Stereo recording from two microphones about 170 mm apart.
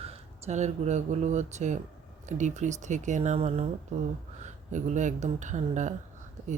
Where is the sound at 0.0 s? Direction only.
40° right (ahead or behind).